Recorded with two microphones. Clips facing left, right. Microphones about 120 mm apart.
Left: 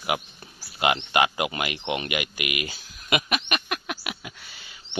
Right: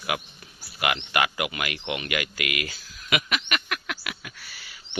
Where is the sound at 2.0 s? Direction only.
20° left (ahead or behind).